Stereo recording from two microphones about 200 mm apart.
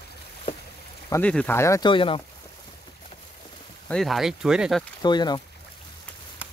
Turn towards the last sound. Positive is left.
turn(degrees=20)  # may be behind; listen again after turning